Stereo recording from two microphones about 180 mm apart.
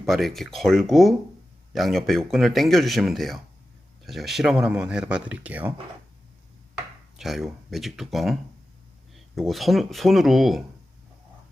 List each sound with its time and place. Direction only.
0.0 s speech: centre (ahead or behind)
7.2 s speech: centre (ahead or behind)